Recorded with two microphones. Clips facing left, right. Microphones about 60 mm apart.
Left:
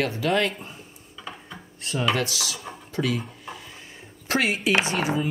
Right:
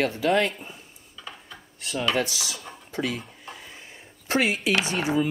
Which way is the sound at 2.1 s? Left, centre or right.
Left.